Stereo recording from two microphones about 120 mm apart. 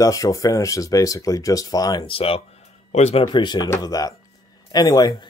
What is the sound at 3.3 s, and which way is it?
Speech, 40° left (ahead or behind).